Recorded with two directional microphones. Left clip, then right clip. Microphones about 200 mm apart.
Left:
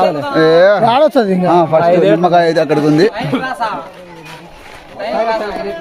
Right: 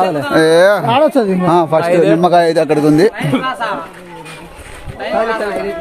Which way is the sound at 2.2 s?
45° right (ahead or behind).